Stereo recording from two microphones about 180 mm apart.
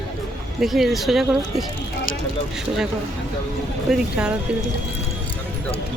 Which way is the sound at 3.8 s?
5° right (ahead or behind).